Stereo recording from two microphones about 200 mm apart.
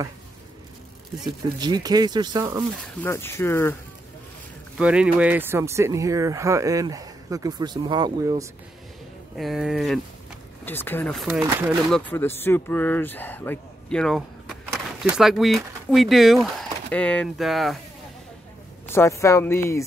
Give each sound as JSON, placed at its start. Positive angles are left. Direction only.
{"t": 1.2, "sound": "speech", "side_deg": -20}
{"t": 2.7, "sound": "speech", "side_deg": 5}
{"t": 4.7, "sound": "speech", "side_deg": -5}
{"t": 9.4, "sound": "speech", "side_deg": 0}
{"t": 10.6, "sound": "speech", "side_deg": 10}
{"t": 11.2, "sound": "speech", "side_deg": -10}
{"t": 11.9, "sound": "speech", "side_deg": 10}
{"t": 18.9, "sound": "speech", "side_deg": 15}